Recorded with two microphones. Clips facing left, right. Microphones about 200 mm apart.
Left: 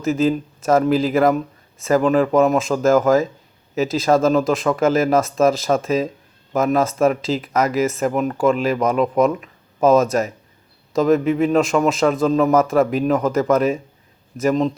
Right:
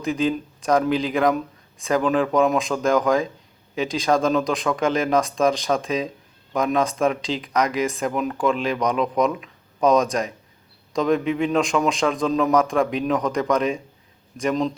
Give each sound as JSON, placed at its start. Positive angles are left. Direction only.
{"t": 0.0, "sound": "speech", "side_deg": 5}